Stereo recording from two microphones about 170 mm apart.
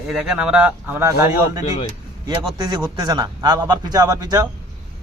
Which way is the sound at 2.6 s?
25° right (ahead or behind).